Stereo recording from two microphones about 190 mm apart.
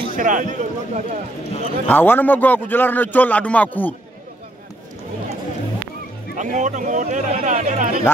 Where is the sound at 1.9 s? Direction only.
10° left (ahead or behind).